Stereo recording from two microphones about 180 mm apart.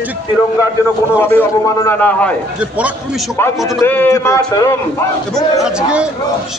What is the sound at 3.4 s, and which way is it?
A man's voice, 15° left (ahead or behind).